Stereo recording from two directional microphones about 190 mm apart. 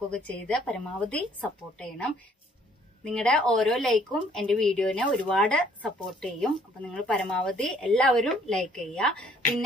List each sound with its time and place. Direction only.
0.1 s speech: 5° left (ahead or behind)